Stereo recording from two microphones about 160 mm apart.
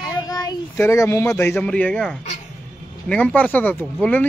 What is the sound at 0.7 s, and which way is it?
A man's voice, 15° left (ahead or behind).